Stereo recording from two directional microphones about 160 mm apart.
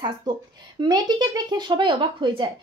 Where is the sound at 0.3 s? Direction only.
25° right (ahead or behind).